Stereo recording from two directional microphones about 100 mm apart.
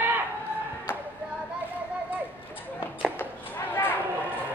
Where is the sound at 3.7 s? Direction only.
20° left (ahead or behind).